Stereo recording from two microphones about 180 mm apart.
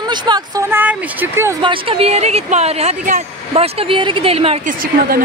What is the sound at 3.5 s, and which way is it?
Speech, 30° right (ahead or behind).